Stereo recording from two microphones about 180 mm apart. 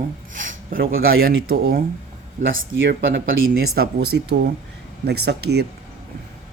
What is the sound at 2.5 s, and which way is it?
Speech, 80° right.